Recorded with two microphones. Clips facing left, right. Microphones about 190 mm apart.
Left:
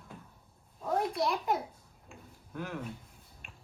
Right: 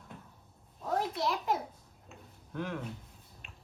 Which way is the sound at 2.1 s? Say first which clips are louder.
Even; 5° left (ahead or behind).